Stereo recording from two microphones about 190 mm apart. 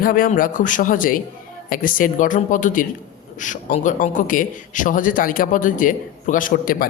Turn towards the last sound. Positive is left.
turn(degrees=50)  # may be behind; listen again after turning